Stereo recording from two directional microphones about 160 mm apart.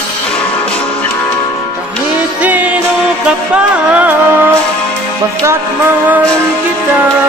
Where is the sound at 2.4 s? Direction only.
10° right (ahead or behind).